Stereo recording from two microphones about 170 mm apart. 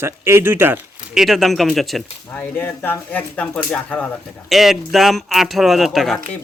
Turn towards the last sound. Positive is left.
turn(degrees=0)  # may be behind; listen again after turning